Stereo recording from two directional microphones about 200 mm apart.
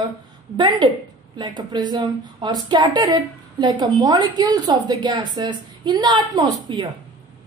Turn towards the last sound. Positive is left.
turn(degrees=-20)  # may be behind; listen again after turning